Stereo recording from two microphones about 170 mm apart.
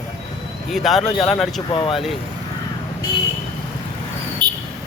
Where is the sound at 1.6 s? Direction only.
30° left (ahead or behind).